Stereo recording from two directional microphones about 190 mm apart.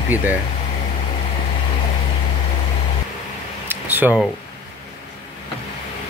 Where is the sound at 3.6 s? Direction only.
10° right (ahead or behind).